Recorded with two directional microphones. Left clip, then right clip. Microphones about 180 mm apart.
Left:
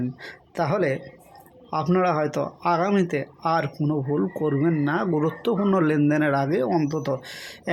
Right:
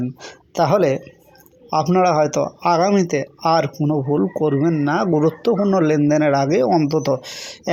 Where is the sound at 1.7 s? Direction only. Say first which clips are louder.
Right 6 dB; 15° right (ahead or behind).